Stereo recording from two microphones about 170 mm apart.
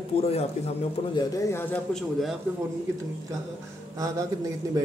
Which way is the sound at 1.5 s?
10° left (ahead or behind).